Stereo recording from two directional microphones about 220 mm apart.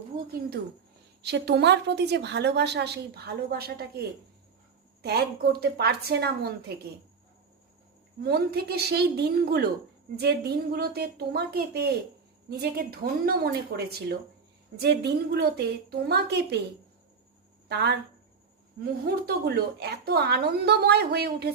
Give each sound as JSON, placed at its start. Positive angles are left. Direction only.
{"t": 0.2, "sound": "a woman's voice", "side_deg": -45}
{"t": 5.0, "sound": "a woman's voice", "side_deg": -45}
{"t": 8.2, "sound": "a woman's voice", "side_deg": -45}
{"t": 17.7, "sound": "speech", "side_deg": -50}
{"t": 19.0, "sound": "a woman's voice", "side_deg": -45}